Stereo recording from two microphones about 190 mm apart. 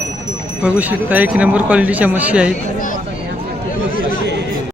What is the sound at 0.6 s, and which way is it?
Speech, 10° right (ahead or behind).